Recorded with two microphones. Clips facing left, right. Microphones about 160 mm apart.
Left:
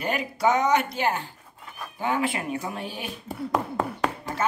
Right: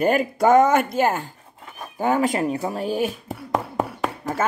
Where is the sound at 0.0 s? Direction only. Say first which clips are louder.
Right 6 dB; 45° right (ahead or behind).